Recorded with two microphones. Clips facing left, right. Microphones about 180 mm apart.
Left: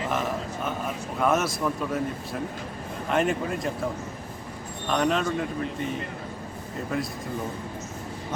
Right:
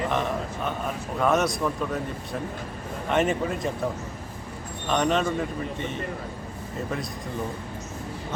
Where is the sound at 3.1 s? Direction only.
Centre (ahead or behind).